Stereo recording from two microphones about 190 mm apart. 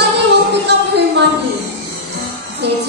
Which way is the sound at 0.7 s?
60° right (ahead or behind).